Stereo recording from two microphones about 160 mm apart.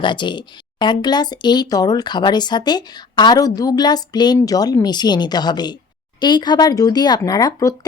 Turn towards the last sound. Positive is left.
turn(degrees=20)  # may be behind; listen again after turning